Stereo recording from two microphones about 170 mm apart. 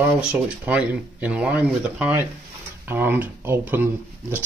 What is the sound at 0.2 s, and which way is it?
Speech, 5° right (ahead or behind).